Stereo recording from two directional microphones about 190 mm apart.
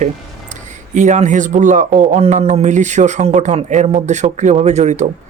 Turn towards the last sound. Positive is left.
turn(degrees=-35)  # may be behind; listen again after turning